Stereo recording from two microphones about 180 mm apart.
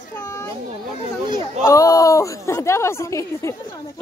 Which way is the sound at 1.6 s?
20° left (ahead or behind).